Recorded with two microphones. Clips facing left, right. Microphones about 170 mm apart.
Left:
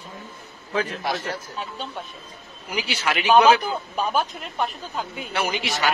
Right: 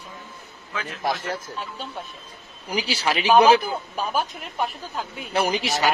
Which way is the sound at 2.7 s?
35° right (ahead or behind).